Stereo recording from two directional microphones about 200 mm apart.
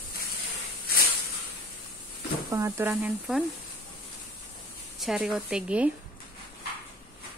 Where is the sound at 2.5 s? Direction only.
15° right (ahead or behind).